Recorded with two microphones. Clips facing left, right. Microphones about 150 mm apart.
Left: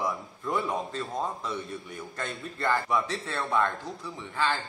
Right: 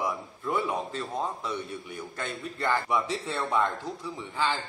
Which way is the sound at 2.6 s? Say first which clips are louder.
Even; 15° right (ahead or behind).